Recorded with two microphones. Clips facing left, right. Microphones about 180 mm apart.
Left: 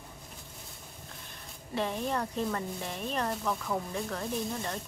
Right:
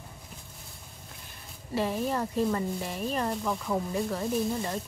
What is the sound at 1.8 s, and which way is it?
Speech, 5° right (ahead or behind).